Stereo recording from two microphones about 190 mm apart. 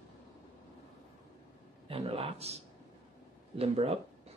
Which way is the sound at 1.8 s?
30° right (ahead or behind).